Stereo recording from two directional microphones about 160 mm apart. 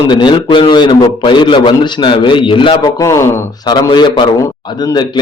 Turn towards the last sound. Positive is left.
turn(degrees=30)  # may be behind; listen again after turning